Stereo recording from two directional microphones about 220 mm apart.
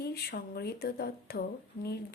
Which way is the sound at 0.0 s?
45° left (ahead or behind).